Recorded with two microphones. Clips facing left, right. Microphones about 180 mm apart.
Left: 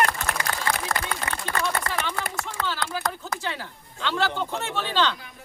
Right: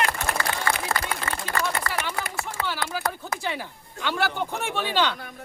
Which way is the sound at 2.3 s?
10° right (ahead or behind).